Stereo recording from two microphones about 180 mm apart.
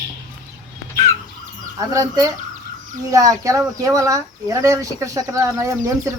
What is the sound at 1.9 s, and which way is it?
Speech, 20° right (ahead or behind).